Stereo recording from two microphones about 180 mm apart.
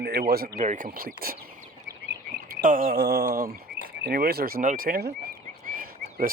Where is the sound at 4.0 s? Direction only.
60° right (ahead or behind).